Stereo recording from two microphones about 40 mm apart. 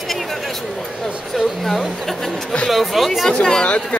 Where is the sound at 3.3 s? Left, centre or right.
Centre.